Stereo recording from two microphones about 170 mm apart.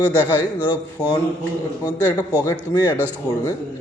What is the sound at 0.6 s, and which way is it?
A man's voice, 25° left (ahead or behind).